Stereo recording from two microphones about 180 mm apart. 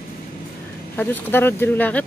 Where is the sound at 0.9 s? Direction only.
10° left (ahead or behind).